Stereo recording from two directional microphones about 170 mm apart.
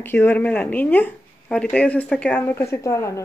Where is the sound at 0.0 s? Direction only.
10° left (ahead or behind).